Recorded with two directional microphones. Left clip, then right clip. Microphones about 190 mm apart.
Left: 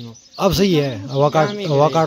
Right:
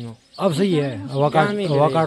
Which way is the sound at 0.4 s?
15° left (ahead or behind).